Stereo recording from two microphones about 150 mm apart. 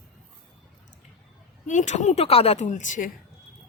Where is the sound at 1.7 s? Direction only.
55° left (ahead or behind).